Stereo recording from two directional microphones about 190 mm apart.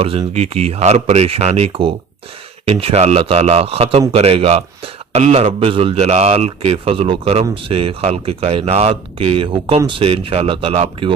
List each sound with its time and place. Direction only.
0.0 s speech: 30° right (ahead or behind)